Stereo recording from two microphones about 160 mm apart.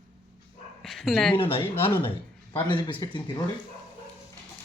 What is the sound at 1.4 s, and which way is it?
Speech, 35° left (ahead or behind).